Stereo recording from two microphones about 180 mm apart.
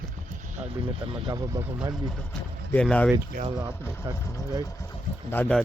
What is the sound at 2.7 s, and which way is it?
Speech, 5° left (ahead or behind).